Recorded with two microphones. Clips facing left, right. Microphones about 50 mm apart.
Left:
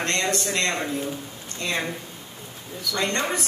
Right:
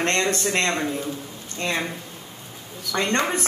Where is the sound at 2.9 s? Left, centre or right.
Right.